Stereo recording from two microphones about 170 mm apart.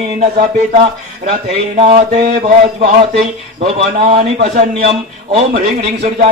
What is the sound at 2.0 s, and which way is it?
A man's voice, 40° right (ahead or behind).